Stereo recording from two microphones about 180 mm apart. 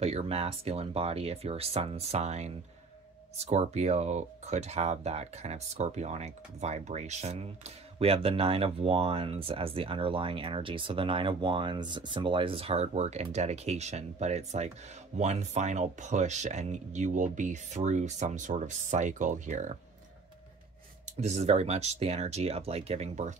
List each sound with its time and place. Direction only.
0.0 s speech: 35° right (ahead or behind)
21.0 s speech: 40° right (ahead or behind)